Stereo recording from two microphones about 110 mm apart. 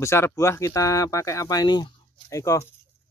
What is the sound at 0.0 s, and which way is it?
Speech, 25° left (ahead or behind).